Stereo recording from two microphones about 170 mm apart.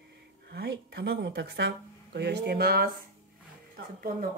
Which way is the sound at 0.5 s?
70° right (ahead or behind).